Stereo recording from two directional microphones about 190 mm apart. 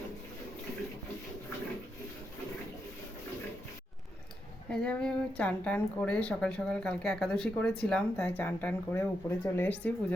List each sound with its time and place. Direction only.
4.7 s a woman's voice: 5° left (ahead or behind)